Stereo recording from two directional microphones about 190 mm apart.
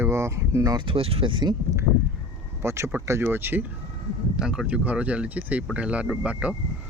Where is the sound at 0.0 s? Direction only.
15° right (ahead or behind).